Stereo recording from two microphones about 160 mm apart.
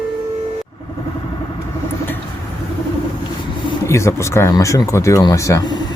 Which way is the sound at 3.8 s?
15° left (ahead or behind).